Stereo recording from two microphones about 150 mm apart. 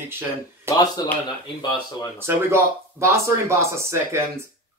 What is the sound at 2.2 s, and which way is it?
A man's voice, 15° right (ahead or behind).